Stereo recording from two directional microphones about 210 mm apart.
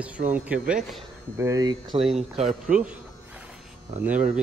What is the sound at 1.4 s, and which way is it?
Speech, 15° right (ahead or behind).